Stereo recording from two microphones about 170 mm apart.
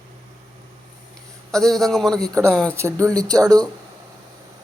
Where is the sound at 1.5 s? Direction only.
Centre (ahead or behind).